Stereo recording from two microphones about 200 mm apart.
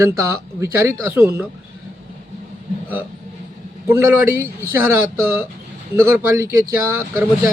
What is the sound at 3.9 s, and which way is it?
Speech, 10° right (ahead or behind).